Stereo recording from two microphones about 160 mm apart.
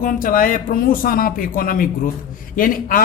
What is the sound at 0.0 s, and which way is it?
Speech, 60° left (ahead or behind).